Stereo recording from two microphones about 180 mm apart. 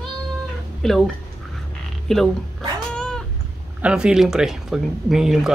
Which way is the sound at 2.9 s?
5° left (ahead or behind).